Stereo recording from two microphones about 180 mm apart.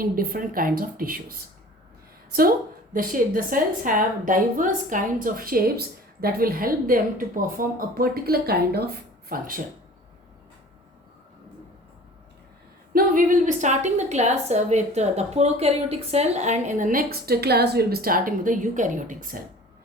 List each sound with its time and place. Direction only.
0.0 s a woman's voice: 50° right (ahead or behind)
2.9 s a woman's voice: 50° right (ahead or behind)
12.9 s a woman's voice: 50° right (ahead or behind)